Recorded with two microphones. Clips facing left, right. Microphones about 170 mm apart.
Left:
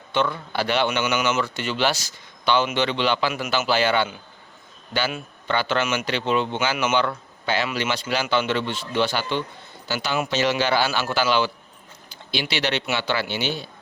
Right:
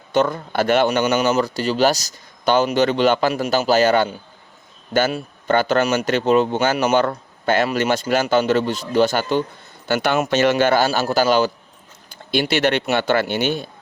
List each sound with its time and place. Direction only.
0.1 s a man's voice: 45° right (ahead or behind)
9.9 s speech: 55° right (ahead or behind)